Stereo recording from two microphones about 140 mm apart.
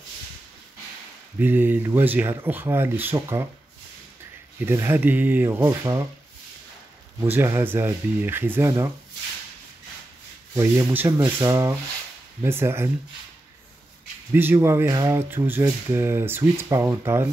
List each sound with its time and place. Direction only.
1.4 s speech: 15° right (ahead or behind)
4.6 s speech: 15° right (ahead or behind)
7.2 s speech: 15° right (ahead or behind)
10.5 s speech: 20° right (ahead or behind)
14.3 s speech: 15° right (ahead or behind)